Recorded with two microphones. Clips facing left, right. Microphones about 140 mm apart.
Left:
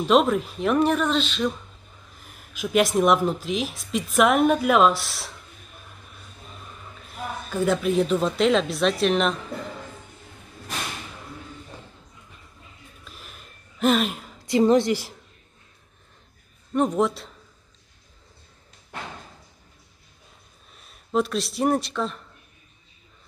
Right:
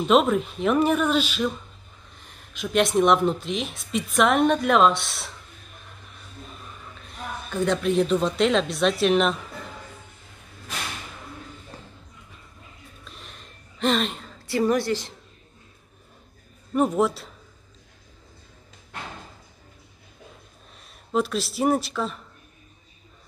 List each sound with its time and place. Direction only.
0.0 s speech: centre (ahead or behind)
2.1 s speech: 5° left (ahead or behind)
7.4 s speech: 5° left (ahead or behind)
13.0 s a sound: 5° left (ahead or behind)
14.4 s a woman's voice: 20° left (ahead or behind)
16.7 s speech: 5° right (ahead or behind)
20.8 s speech: centre (ahead or behind)